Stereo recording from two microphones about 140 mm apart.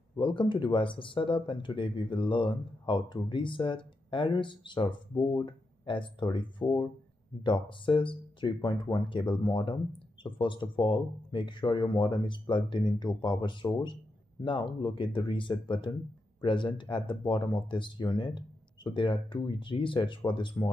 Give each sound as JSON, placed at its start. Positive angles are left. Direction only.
{"t": 0.2, "sound": "speech", "side_deg": 35}